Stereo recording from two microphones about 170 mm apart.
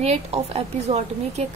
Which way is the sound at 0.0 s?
40° right (ahead or behind).